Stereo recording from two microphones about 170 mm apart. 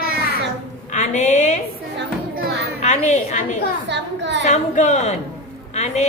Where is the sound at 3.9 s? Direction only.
90° right.